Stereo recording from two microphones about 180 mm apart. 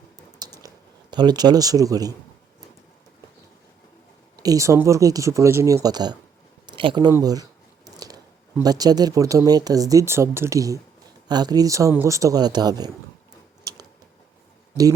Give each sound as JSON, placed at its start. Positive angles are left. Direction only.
{"t": 0.3, "sound": "squish", "side_deg": -20}
{"t": 1.1, "sound": "speech", "side_deg": -25}
{"t": 4.4, "sound": "speech", "side_deg": -20}